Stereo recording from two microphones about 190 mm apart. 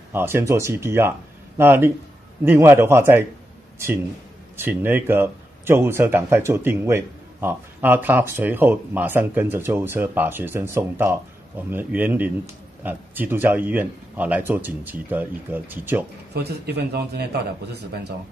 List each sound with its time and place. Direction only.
0.1 s speech: 10° right (ahead or behind)
4.6 s speech: 10° right (ahead or behind)
16.3 s a man's voice: 60° right (ahead or behind)